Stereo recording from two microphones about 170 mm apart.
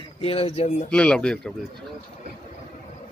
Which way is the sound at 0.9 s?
5° left (ahead or behind).